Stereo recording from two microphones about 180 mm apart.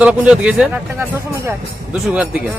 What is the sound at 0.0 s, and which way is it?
Speech, 5° right (ahead or behind).